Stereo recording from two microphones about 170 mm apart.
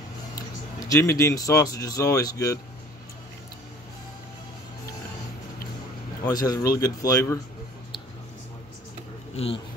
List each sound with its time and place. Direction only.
0.7 s speech: 20° left (ahead or behind)
6.2 s speech: 20° left (ahead or behind)
9.3 s speech: 35° left (ahead or behind)